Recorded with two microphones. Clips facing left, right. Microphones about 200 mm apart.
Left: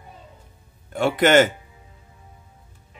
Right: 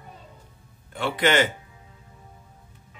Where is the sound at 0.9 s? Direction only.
45° left (ahead or behind).